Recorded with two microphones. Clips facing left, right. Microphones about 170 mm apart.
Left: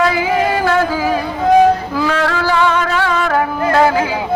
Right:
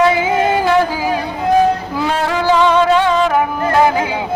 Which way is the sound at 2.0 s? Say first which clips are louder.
Left 1 dB; 20° right (ahead or behind).